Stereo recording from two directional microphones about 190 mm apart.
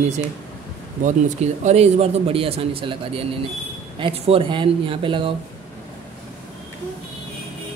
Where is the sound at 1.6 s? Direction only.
35° right (ahead or behind).